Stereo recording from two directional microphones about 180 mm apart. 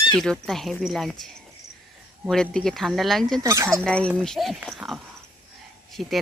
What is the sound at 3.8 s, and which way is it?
Speech, 5° left (ahead or behind).